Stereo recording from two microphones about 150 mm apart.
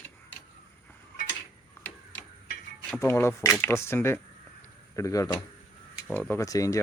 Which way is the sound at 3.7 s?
15° left (ahead or behind).